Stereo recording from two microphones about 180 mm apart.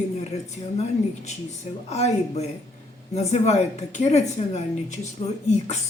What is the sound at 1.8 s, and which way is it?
Speech, 35° left (ahead or behind).